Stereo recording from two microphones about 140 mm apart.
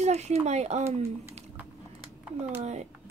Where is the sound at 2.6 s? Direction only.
50° right (ahead or behind).